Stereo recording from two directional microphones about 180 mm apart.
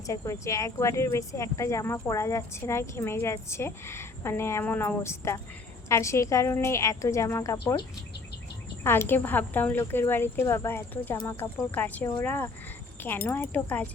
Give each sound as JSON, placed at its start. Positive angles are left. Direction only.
{"t": 0.1, "sound": "speech", "side_deg": 15}
{"t": 8.8, "sound": "speech", "side_deg": 15}